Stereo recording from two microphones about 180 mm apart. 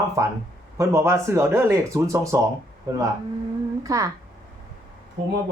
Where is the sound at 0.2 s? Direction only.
15° right (ahead or behind).